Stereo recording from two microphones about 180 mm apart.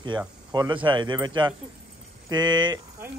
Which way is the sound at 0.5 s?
25° right (ahead or behind).